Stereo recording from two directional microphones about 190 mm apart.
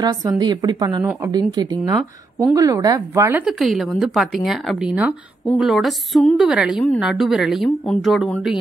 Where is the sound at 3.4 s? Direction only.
Centre (ahead or behind).